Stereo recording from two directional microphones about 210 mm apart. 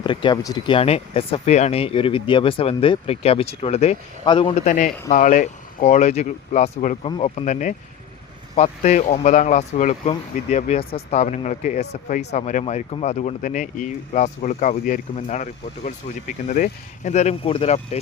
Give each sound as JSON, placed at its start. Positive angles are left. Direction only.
{"t": 0.0, "sound": "speech", "side_deg": 25}